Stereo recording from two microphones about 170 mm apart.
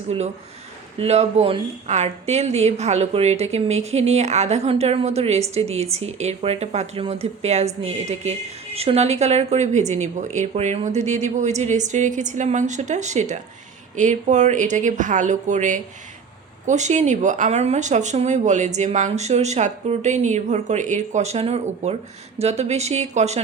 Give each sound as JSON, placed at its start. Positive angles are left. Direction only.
{"t": 0.9, "sound": "speech", "side_deg": -40}